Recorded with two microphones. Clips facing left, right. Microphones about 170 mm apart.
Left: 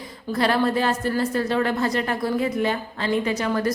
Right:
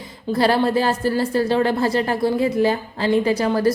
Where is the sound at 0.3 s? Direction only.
30° right (ahead or behind).